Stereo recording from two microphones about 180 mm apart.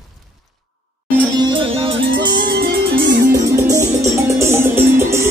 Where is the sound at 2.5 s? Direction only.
60° right (ahead or behind).